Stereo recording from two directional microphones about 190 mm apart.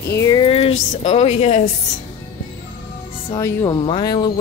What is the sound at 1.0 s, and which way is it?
Speech, 35° left (ahead or behind).